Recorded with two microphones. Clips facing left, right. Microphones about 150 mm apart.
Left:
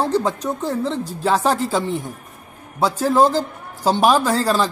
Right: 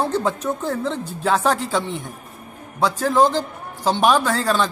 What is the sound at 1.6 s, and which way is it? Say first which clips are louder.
Speech: left 2 dB; 40° left (ahead or behind).